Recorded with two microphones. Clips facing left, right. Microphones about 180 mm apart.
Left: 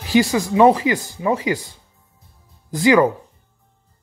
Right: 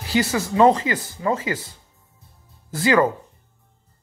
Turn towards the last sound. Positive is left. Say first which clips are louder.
# left 4 dB
turn(degrees=15)  # may be behind; listen again after turning